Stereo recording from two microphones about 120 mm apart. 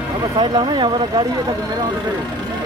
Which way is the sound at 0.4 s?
40° right (ahead or behind).